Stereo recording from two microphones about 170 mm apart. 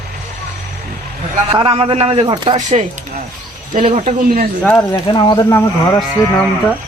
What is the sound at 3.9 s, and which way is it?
Speech, 40° right (ahead or behind).